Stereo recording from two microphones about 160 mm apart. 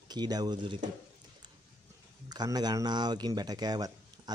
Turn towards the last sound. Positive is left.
turn(degrees=-25)  # may be behind; listen again after turning